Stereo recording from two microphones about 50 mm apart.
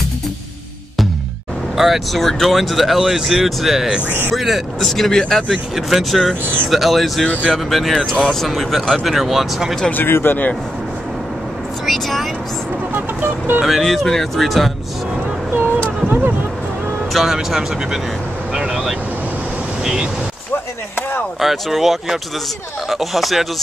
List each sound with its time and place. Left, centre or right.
1.8 s speech: centre
10.0 s speech: left
11.8 s speech: centre
12.9 s speech: right
13.7 s speech: centre
16.1 s a sound: right
17.1 s speech: centre
18.5 s vehicle: centre
19.8 s speech: centre
21.4 s speech: centre